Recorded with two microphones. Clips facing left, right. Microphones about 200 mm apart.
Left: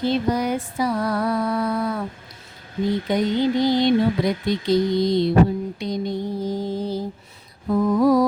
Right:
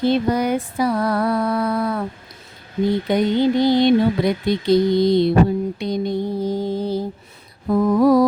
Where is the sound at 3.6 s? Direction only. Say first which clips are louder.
Right 3 dB; 60° right (ahead or behind).